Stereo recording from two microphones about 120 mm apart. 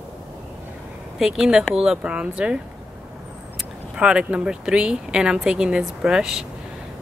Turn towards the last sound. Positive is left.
turn(degrees=-5)  # may be behind; listen again after turning